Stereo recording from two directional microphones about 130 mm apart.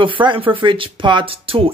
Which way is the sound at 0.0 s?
40° right (ahead or behind).